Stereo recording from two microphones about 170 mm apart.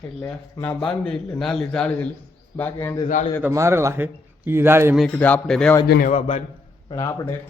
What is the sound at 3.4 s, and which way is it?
A man's voice, 15° right (ahead or behind).